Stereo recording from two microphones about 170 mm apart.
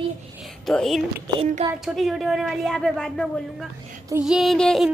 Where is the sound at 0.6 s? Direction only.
Centre (ahead or behind).